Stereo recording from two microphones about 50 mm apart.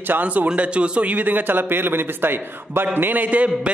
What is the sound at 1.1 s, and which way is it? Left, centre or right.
A man's voice, right.